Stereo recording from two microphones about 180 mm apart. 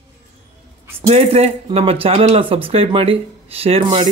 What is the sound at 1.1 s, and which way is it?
Speech, 35° right (ahead or behind).